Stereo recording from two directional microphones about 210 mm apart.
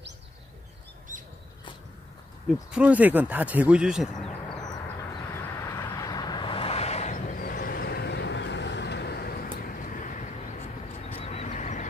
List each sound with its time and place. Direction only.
2.7 s speech: 5° right (ahead or behind)
4.6 s a sound: 20° left (ahead or behind)
5.4 s vehicle: 15° left (ahead or behind); by 11.8 s 35° left (ahead or behind)